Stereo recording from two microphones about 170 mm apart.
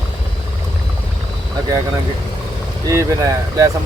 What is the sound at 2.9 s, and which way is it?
Speech, 20° right (ahead or behind).